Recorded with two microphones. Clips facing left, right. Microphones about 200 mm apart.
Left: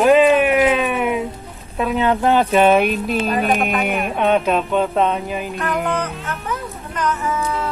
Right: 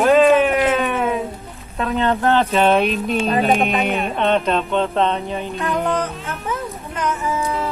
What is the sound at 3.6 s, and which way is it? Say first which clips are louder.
Speech: right 1 dB; centre (ahead or behind).